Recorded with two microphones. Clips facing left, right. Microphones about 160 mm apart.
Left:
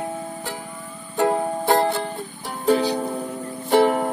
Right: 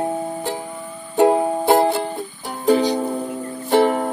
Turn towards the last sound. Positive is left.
turn(degrees=0)  # may be behind; listen again after turning